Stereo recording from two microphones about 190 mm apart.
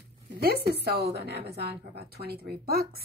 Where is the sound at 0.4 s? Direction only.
55° right (ahead or behind).